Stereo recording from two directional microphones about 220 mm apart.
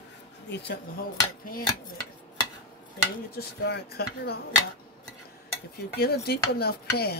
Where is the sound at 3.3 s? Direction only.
45° left (ahead or behind).